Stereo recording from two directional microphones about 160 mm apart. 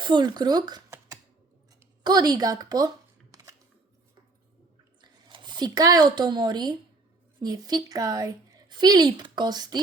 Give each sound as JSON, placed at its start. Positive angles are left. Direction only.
{"t": 0.0, "sound": "a woman's voice", "side_deg": -30}
{"t": 3.3, "sound": "a sound", "side_deg": -20}
{"t": 5.3, "sound": "a woman's voice", "side_deg": -30}